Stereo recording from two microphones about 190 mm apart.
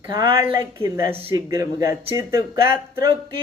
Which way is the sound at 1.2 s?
30° right (ahead or behind).